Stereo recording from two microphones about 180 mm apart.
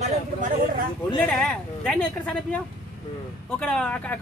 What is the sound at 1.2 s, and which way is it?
Speech, 5° left (ahead or behind).